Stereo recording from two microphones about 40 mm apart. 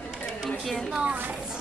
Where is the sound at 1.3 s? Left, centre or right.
Centre.